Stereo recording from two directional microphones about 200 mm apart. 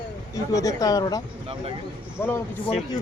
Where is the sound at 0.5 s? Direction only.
15° left (ahead or behind).